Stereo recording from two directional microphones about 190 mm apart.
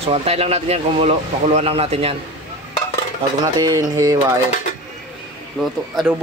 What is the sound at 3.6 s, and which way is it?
Music, 20° right (ahead or behind).